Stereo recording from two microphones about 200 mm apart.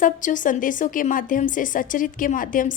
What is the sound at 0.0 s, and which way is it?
A woman's voice, 40° left (ahead or behind).